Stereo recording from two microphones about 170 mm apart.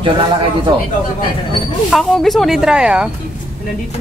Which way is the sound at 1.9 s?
Centre (ahead or behind).